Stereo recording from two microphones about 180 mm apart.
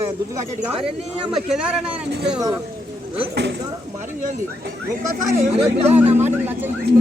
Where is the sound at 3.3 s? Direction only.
75° right (ahead or behind).